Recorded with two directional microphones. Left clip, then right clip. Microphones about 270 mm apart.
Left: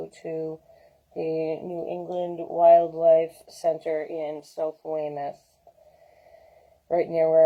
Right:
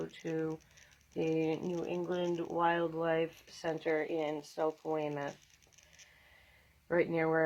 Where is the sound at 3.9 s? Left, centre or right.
Centre.